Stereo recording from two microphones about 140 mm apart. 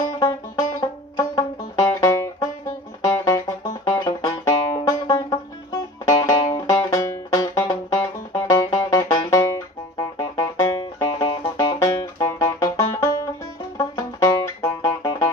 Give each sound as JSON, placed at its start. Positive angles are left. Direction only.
{"t": 0.2, "sound": "music", "side_deg": 25}